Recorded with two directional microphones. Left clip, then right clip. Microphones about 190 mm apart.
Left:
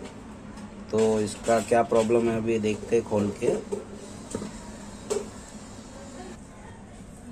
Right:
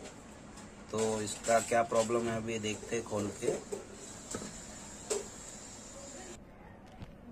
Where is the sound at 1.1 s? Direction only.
10° left (ahead or behind).